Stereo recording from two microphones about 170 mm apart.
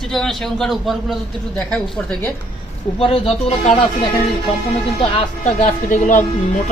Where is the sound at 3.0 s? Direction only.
35° left (ahead or behind).